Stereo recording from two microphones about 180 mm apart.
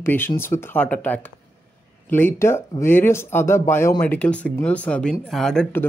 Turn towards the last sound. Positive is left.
turn(degrees=5)  # may be behind; listen again after turning